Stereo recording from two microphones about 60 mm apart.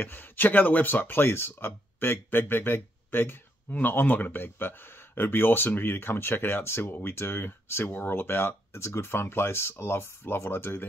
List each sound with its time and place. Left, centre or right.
0.0 s speech: left